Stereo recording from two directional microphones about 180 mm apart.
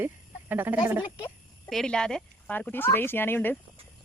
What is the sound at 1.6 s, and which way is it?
Speech, 5° left (ahead or behind).